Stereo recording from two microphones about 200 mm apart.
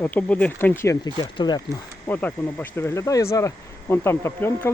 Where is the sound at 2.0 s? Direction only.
10° left (ahead or behind).